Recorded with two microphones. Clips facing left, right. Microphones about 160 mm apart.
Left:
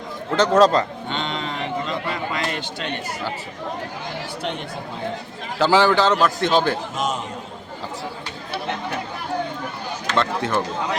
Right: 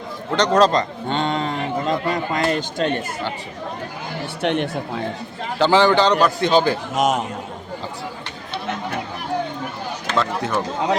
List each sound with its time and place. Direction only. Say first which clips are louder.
0.3 s a man's voice: left 1 dB; 5° left (ahead or behind)
1.1 s a man's voice: right 6 dB; 45° right (ahead or behind)
4.4 s speech: right 10 dB; 70° right (ahead or behind)
5.5 s a man's voice: right 1 dB; 5° left (ahead or behind)
6.9 s speech: right 6 dB; 75° right (ahead or behind)
10.2 s a man's voice: even; centre (ahead or behind)